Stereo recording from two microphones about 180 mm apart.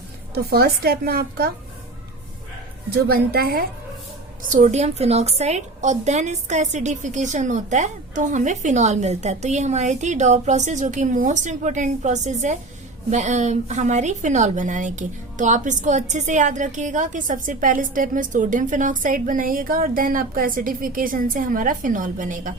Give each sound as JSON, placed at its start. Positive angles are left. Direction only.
{"t": 0.3, "sound": "a woman's voice", "side_deg": -60}
{"t": 2.9, "sound": "a woman's voice", "side_deg": -60}
{"t": 4.5, "sound": "a woman's voice", "side_deg": -40}